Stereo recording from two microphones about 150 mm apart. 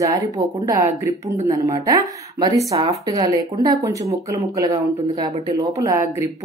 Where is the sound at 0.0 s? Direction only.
20° right (ahead or behind).